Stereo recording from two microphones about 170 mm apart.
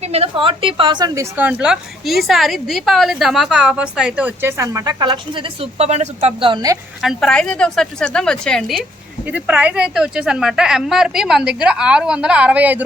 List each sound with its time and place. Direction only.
0.0 s a woman's voice: 35° right (ahead or behind)
7.0 s speech: centre (ahead or behind)
9.2 s speech: 10° right (ahead or behind)